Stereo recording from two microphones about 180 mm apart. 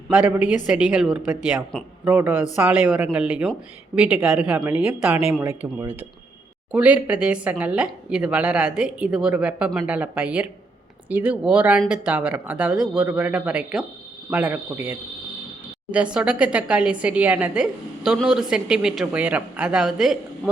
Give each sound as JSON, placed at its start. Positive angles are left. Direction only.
{"t": 0.1, "sound": "a woman's voice", "side_deg": -10}